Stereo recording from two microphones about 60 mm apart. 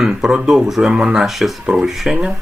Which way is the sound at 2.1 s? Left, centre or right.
Centre.